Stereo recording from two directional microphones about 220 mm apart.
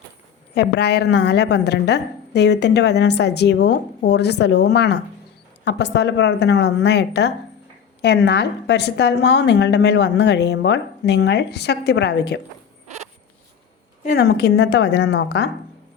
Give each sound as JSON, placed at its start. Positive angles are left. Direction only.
{"t": 0.5, "sound": "a woman's voice", "side_deg": 50}
{"t": 14.1, "sound": "a woman's voice", "side_deg": 50}